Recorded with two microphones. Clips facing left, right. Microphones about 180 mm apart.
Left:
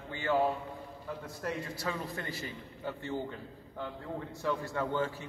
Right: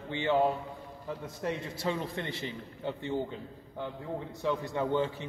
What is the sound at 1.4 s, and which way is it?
A man's voice, 25° right (ahead or behind).